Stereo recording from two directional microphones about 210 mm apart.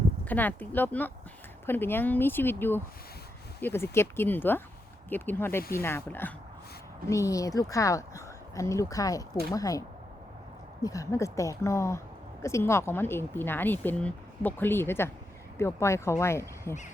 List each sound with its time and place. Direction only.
0.3 s a woman's voice: 10° left (ahead or behind)
10.8 s a woman's voice: 15° left (ahead or behind)